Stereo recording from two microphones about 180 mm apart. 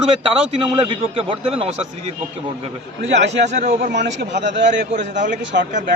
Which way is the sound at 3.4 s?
40° right (ahead or behind).